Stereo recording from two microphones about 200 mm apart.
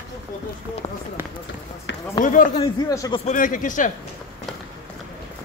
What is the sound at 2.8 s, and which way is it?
Speech, 20° left (ahead or behind).